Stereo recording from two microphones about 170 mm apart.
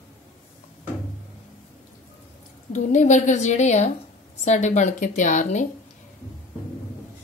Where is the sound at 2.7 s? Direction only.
45° left (ahead or behind).